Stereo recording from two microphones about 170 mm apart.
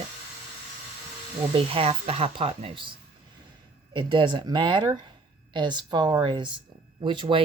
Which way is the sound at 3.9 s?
30° right (ahead or behind).